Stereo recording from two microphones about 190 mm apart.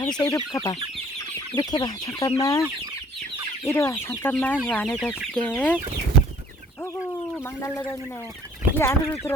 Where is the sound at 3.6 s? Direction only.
10° left (ahead or behind).